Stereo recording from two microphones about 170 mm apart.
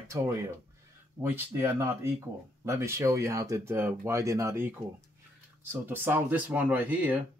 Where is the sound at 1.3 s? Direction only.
15° right (ahead or behind).